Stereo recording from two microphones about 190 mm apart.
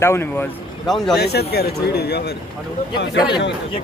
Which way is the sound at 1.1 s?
60° left (ahead or behind).